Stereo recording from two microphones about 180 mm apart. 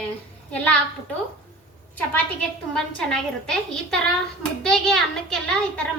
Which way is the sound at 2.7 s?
5° left (ahead or behind).